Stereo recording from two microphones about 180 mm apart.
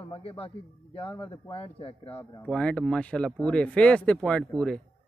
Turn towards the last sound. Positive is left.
turn(degrees=5)  # may be behind; listen again after turning